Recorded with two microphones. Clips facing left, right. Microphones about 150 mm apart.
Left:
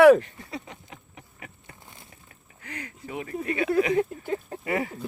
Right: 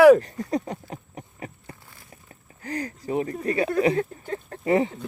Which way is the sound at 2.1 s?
35° right (ahead or behind).